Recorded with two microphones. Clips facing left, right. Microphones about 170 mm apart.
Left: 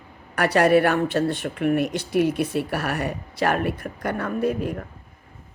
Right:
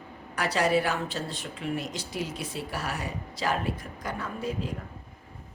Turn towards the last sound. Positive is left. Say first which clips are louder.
# left 9 dB
turn(degrees=60)  # may be behind; listen again after turning